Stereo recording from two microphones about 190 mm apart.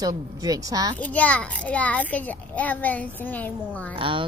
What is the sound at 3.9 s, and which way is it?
Speech, 25° right (ahead or behind).